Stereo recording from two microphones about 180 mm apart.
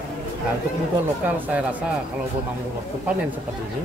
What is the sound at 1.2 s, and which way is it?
Speech, 10° right (ahead or behind).